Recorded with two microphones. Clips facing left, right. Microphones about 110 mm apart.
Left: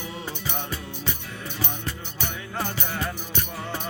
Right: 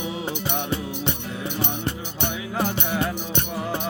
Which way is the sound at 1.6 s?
25° right (ahead or behind).